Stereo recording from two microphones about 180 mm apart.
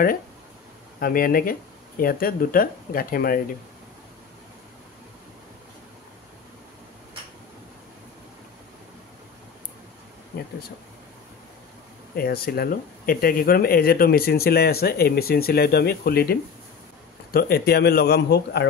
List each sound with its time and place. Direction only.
0.9 s speech: 55° left (ahead or behind)
10.3 s a sound: 60° left (ahead or behind)
12.2 s speech: 55° left (ahead or behind)